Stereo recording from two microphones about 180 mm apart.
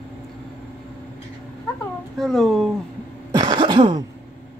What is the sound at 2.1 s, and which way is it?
Speech, centre (ahead or behind).